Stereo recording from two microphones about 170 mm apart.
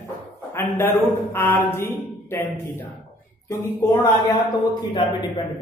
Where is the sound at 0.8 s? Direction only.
10° left (ahead or behind).